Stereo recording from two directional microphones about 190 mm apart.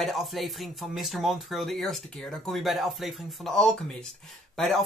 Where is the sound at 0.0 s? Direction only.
Centre (ahead or behind).